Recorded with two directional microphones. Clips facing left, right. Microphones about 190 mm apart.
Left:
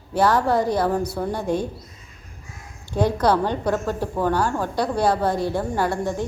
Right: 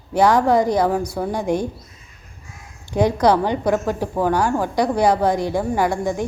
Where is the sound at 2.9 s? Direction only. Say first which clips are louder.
Right 3 dB; 15° right (ahead or behind).